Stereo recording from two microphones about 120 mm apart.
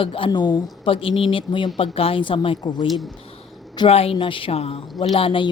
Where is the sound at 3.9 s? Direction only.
55° left (ahead or behind).